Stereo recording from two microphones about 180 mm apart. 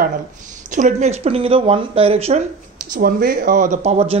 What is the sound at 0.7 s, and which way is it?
Speech, 40° right (ahead or behind).